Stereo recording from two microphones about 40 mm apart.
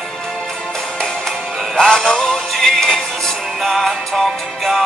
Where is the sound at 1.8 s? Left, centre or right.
Centre.